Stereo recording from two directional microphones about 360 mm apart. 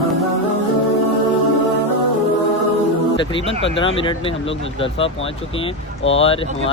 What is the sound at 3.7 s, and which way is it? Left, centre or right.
Speech, centre.